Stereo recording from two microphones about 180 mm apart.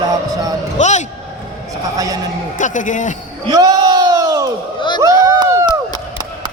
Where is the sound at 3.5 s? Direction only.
20° right (ahead or behind).